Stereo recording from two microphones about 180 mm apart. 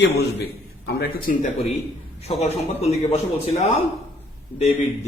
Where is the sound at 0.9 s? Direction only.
60° left (ahead or behind).